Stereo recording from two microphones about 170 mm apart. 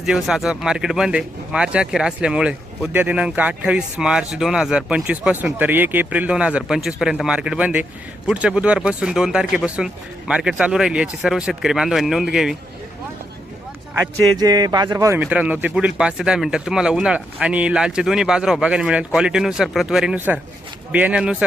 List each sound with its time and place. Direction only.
0.0 s speech: centre (ahead or behind)
14.3 s speech: 20° right (ahead or behind)
15.2 s speech: 5° right (ahead or behind)